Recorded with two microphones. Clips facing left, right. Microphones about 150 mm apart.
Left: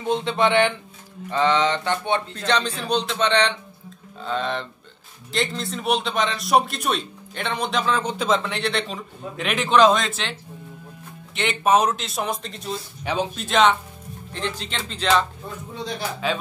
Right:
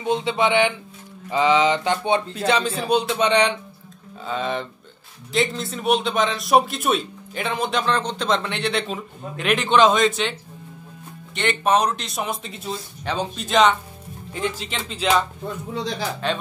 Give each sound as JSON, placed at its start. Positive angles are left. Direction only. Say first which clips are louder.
{"t": 0.0, "sound": "speech", "louder": "even", "side_deg": 0}
{"t": 11.3, "sound": "speech", "louder": "left 1 dB", "side_deg": 5}
{"t": 13.0, "sound": "speech", "louder": "left 1 dB", "side_deg": 5}
{"t": 16.2, "sound": "speech", "louder": "even", "side_deg": 5}